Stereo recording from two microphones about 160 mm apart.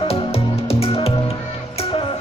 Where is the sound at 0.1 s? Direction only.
40° left (ahead or behind).